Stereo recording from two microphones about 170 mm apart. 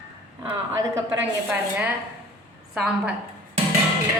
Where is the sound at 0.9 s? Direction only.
15° right (ahead or behind).